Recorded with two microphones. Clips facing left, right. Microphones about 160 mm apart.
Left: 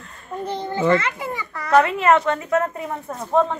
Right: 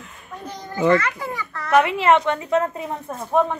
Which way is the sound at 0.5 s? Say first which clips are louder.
Right 1 dB; 25° left (ahead or behind).